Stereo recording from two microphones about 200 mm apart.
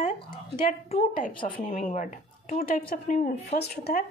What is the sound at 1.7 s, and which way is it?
A woman's voice, 40° left (ahead or behind).